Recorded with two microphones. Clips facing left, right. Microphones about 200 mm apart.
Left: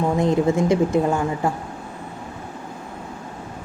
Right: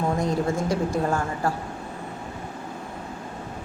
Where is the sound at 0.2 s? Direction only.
20° left (ahead or behind).